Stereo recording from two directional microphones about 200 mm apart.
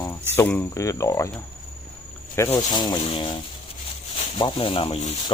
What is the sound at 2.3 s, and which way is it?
Rub, 15° left (ahead or behind).